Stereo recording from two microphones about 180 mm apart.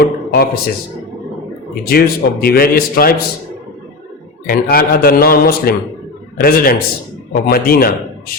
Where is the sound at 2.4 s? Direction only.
55° left (ahead or behind).